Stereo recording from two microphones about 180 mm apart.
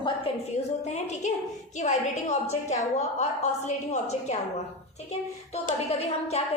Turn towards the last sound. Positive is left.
turn(degrees=35)  # may be behind; listen again after turning